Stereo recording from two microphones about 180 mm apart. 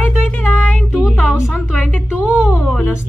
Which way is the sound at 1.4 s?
15° left (ahead or behind).